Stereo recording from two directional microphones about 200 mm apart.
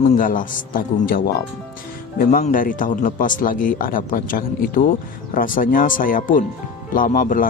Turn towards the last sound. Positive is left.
turn(degrees=45)  # may be behind; listen again after turning